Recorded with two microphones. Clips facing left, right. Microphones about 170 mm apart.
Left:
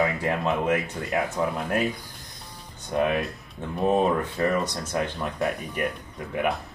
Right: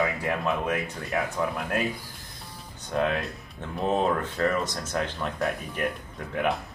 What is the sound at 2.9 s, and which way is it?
Speech, 15° left (ahead or behind).